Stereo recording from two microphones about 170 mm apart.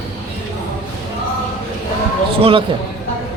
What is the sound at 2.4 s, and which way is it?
Speech, 30° right (ahead or behind).